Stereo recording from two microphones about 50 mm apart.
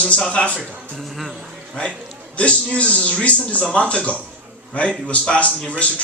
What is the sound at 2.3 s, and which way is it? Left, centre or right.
A man's voice, left.